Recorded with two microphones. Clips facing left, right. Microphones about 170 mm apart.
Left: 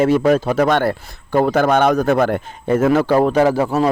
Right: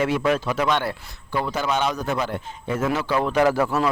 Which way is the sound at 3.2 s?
35° left (ahead or behind).